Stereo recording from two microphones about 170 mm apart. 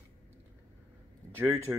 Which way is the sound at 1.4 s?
15° right (ahead or behind).